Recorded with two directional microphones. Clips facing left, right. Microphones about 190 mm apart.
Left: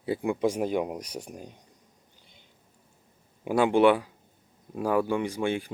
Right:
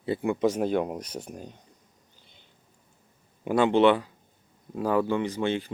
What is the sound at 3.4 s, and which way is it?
Speech, 10° left (ahead or behind).